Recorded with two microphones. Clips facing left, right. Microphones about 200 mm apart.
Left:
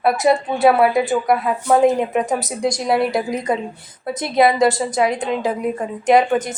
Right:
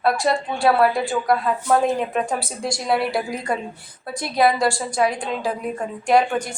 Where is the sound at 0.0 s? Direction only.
20° left (ahead or behind).